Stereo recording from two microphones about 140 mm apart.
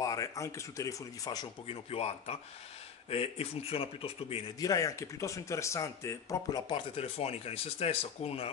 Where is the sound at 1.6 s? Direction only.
45° left (ahead or behind).